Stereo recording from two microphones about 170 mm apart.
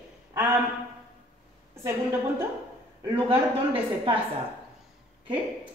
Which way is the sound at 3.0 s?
30° right (ahead or behind).